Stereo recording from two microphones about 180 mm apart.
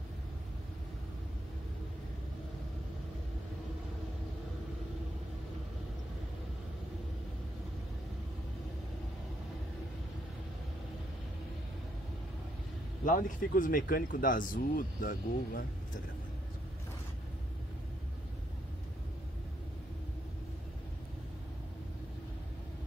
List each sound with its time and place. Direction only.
13.0 s speech: 50° left (ahead or behind)